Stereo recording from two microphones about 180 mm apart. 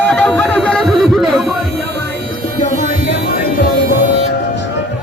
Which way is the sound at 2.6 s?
40° left (ahead or behind).